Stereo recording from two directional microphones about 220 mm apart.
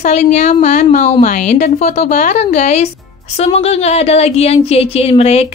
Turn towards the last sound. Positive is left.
turn(degrees=30)  # may be behind; listen again after turning